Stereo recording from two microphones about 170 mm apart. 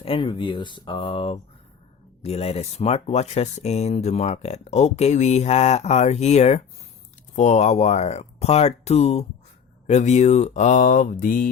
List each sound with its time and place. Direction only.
0.0 s speech: 30° left (ahead or behind)
9.8 s mantra: 40° left (ahead or behind)